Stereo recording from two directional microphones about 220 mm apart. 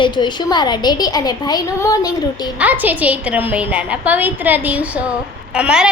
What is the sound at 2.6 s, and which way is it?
A woman's voice, 5° right (ahead or behind).